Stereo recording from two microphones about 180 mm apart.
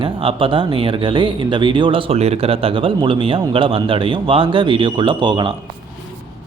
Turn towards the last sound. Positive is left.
turn(degrees=-25)  # may be behind; listen again after turning